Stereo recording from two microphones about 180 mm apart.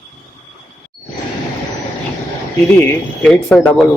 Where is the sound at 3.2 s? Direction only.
5° left (ahead or behind).